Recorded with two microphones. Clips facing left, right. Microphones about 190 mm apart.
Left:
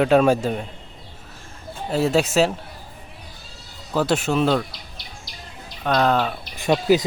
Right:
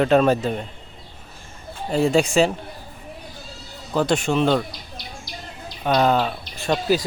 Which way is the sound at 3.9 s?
5° left (ahead or behind).